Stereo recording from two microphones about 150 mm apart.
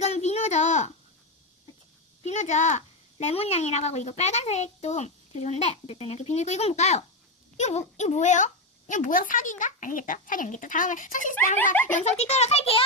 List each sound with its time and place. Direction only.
0.0 s a sound: 45° left (ahead or behind)
2.2 s a child's voice: 50° left (ahead or behind)
11.9 s speech: 50° left (ahead or behind)